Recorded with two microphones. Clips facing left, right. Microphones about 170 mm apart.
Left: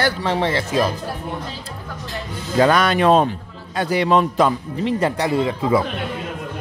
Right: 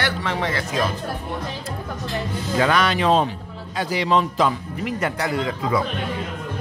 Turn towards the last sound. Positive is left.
turn(degrees=25)  # may be behind; listen again after turning